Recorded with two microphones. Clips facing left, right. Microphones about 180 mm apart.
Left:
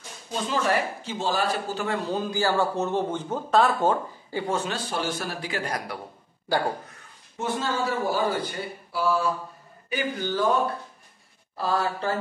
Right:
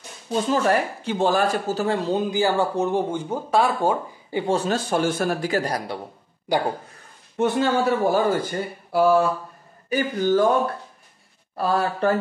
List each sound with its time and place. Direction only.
0.5 s a man's voice: 50° right (ahead or behind)
2.0 s speech: 20° right (ahead or behind)
4.5 s a man's voice: 40° right (ahead or behind)
6.5 s speech: 15° right (ahead or behind)
7.3 s a man's voice: 65° right (ahead or behind)
9.8 s a man's voice: 45° right (ahead or behind)
11.5 s a man's voice: 55° right (ahead or behind)